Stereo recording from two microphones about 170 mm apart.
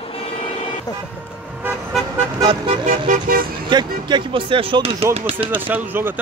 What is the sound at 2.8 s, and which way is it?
Vehicle, 55° right (ahead or behind).